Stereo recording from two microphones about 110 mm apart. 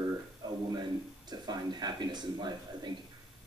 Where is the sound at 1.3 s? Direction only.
40° right (ahead or behind).